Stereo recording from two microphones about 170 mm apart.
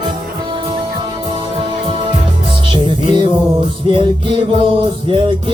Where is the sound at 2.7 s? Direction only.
30° right (ahead or behind).